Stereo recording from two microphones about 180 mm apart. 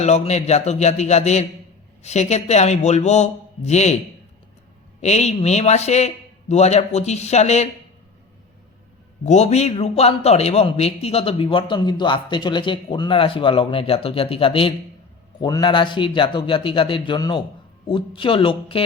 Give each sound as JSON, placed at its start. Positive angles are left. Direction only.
{"t": 0.0, "sound": "a man's voice", "side_deg": 40}
{"t": 4.9, "sound": "a man's voice", "side_deg": 40}
{"t": 9.2, "sound": "a man's voice", "side_deg": 40}